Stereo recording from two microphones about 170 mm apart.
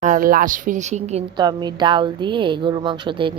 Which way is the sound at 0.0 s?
55° right (ahead or behind).